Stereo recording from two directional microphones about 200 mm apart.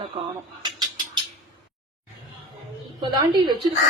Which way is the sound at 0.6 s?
20° right (ahead or behind).